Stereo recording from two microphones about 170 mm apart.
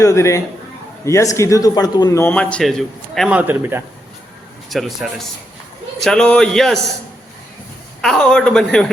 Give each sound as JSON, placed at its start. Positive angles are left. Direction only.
{"t": 0.0, "sound": "a man's voice", "side_deg": 15}
{"t": 2.2, "sound": "a man's voice", "side_deg": 10}
{"t": 3.3, "sound": "a man's voice", "side_deg": -10}
{"t": 4.7, "sound": "a man's voice", "side_deg": 0}
{"t": 8.0, "sound": "a man's voice", "side_deg": 5}